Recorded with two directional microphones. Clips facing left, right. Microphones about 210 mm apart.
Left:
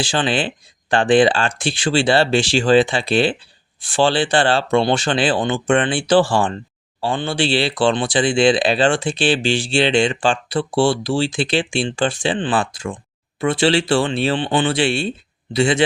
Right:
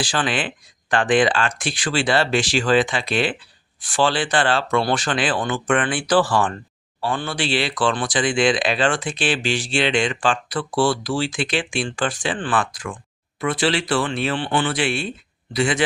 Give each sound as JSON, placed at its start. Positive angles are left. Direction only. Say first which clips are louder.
{"t": 0.0, "sound": "speech", "louder": "left 3 dB", "side_deg": 25}